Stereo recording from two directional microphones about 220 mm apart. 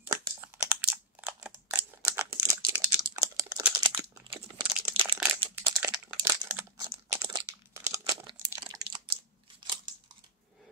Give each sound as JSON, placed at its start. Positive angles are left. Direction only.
{"t": 0.0, "sound": "crumpling", "side_deg": -10}
{"t": 3.3, "sound": "computer keyboard", "side_deg": -15}
{"t": 3.7, "sound": "crumpling", "side_deg": -20}
{"t": 5.6, "sound": "crumpling", "side_deg": -10}